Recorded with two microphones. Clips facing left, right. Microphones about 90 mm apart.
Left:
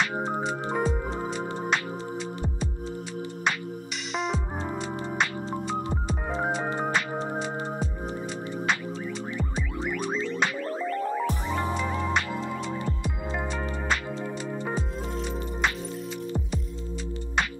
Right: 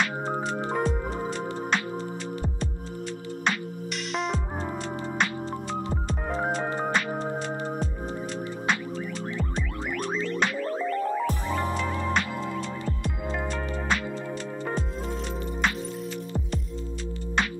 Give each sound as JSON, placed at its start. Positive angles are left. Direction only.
{"t": 0.0, "sound": "music", "side_deg": 0}
{"t": 4.1, "sound": "music", "side_deg": 0}
{"t": 6.0, "sound": "music", "side_deg": 5}
{"t": 9.6, "sound": "music", "side_deg": 0}
{"t": 11.4, "sound": "music", "side_deg": 15}
{"t": 14.6, "sound": "music", "side_deg": 5}